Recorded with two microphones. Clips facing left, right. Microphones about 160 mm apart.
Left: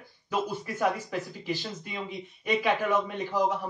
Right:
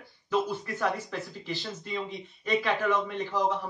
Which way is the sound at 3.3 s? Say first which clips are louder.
Left 1 dB; 20° left (ahead or behind).